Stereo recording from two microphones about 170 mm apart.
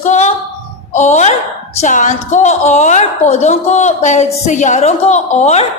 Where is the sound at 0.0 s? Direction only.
40° left (ahead or behind).